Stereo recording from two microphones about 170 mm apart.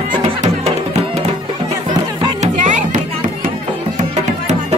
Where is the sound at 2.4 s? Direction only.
45° right (ahead or behind).